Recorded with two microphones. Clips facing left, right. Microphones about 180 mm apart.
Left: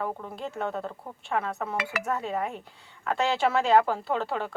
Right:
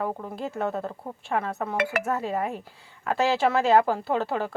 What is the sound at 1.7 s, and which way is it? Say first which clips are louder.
Speech: right 5 dB; 55° right (ahead or behind).